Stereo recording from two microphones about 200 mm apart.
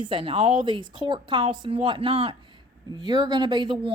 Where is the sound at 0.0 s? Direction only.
25° right (ahead or behind).